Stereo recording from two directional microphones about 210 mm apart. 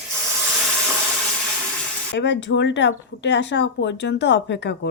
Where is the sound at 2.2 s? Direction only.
60° left (ahead or behind).